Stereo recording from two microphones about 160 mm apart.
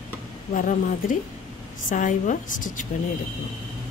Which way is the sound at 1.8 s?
50° left (ahead or behind).